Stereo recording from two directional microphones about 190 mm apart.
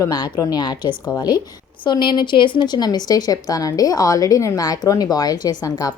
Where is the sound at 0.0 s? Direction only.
20° left (ahead or behind).